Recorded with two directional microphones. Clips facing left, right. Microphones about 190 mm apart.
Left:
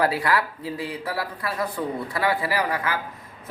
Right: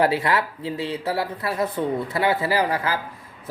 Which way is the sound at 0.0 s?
25° right (ahead or behind).